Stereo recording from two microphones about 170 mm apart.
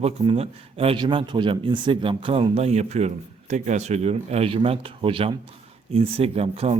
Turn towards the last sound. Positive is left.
turn(degrees=-35)  # may be behind; listen again after turning